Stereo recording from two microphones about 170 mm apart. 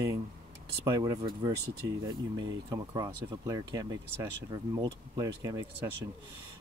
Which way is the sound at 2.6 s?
25° right (ahead or behind).